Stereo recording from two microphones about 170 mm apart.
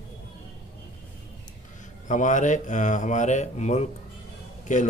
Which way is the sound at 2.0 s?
50° left (ahead or behind).